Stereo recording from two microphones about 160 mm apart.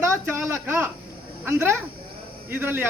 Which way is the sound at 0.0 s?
15° right (ahead or behind).